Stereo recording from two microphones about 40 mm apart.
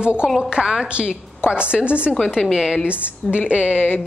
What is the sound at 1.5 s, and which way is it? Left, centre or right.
Speech, right.